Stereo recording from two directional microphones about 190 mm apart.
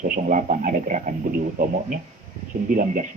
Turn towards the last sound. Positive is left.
turn(degrees=-45)  # may be behind; listen again after turning